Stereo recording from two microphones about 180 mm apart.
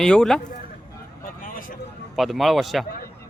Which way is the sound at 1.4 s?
50° left (ahead or behind).